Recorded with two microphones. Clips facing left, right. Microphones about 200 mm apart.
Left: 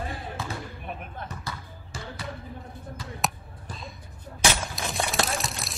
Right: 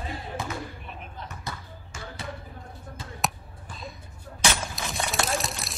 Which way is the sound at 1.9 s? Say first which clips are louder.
Left 2 dB; 35° left (ahead or behind).